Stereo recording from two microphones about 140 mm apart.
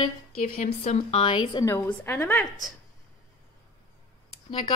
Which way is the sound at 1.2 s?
30° left (ahead or behind).